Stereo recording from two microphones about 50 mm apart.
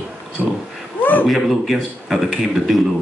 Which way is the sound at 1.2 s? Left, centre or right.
Centre.